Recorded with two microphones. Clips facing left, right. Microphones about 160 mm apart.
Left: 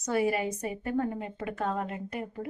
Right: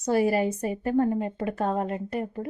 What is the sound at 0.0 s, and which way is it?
A woman's voice, 35° right (ahead or behind).